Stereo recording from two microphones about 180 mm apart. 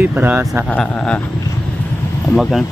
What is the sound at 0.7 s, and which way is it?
Speech, 5° left (ahead or behind).